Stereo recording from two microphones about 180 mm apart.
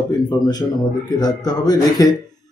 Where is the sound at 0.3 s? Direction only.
25° left (ahead or behind).